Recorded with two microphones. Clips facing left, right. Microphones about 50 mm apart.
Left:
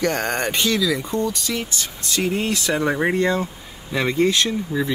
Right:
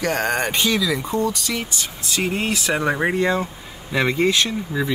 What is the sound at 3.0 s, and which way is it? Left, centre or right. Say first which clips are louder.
Speech: even; centre.